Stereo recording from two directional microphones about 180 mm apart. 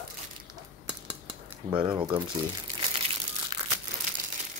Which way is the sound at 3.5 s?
25° right (ahead or behind).